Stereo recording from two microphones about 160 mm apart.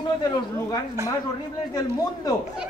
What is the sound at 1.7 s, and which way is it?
Speech, 25° left (ahead or behind).